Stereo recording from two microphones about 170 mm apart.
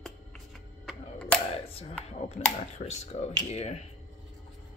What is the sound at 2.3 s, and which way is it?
Speech, 40° left (ahead or behind).